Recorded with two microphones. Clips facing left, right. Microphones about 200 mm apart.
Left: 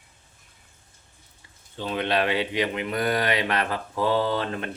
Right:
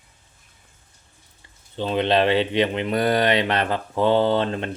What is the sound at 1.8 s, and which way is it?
Speech, 25° right (ahead or behind).